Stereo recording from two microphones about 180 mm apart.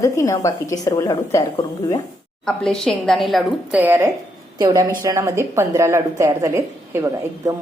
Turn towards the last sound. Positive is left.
turn(degrees=-20)  # may be behind; listen again after turning